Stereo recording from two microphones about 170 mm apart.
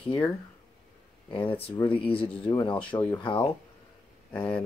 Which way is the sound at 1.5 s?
30° left (ahead or behind).